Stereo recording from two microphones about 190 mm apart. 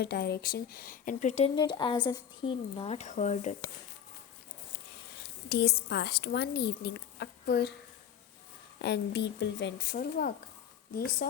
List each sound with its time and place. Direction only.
0.0 s speech: 55° left (ahead or behind); by 1.5 s 40° left (ahead or behind)
1.5 s speech: 25° left (ahead or behind)
5.5 s speech: 60° left (ahead or behind)
8.8 s speech: 60° left (ahead or behind)
9.9 s speech: 50° left (ahead or behind)